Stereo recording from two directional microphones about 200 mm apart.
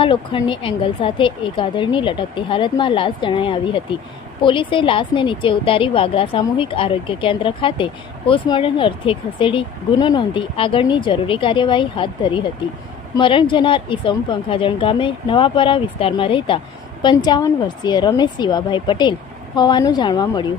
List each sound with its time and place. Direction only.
0.0 s speech: 25° left (ahead or behind)